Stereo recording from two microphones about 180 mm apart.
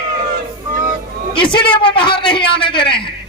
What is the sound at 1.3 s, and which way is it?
A man's voice, 25° left (ahead or behind).